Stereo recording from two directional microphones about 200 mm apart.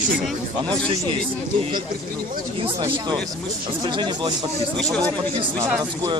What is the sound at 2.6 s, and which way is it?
Speech, 25° right (ahead or behind).